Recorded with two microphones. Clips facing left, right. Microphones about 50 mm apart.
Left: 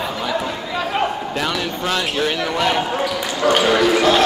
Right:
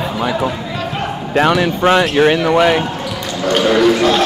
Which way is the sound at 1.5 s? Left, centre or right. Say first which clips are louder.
Right 9 dB; centre.